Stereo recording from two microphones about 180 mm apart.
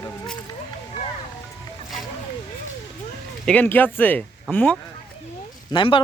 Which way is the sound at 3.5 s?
10° left (ahead or behind).